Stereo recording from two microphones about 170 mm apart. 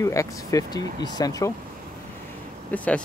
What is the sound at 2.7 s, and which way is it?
Speech, 10° left (ahead or behind).